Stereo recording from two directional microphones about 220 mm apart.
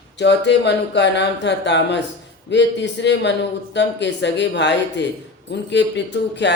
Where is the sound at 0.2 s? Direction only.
50° left (ahead or behind).